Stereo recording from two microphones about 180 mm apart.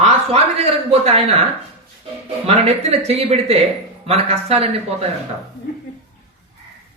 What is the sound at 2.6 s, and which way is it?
Speech, 35° right (ahead or behind).